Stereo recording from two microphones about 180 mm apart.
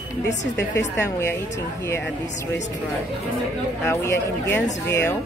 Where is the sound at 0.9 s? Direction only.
15° left (ahead or behind).